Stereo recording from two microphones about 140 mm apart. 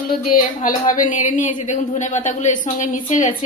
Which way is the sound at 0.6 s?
70° left (ahead or behind).